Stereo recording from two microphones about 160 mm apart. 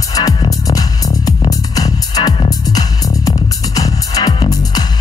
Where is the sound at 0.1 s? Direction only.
25° left (ahead or behind).